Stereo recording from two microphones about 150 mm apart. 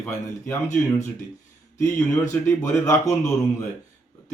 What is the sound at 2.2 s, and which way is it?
A man's voice, 20° left (ahead or behind).